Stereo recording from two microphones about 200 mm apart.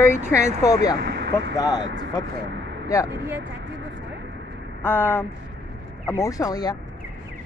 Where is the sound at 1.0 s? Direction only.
55° right (ahead or behind).